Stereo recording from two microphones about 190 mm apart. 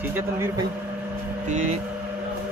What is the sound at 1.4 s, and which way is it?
Speech, 40° right (ahead or behind).